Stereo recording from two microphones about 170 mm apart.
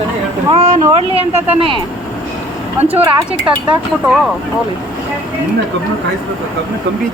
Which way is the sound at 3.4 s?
30° right (ahead or behind).